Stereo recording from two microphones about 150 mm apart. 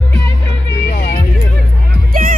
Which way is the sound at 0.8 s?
70° left (ahead or behind).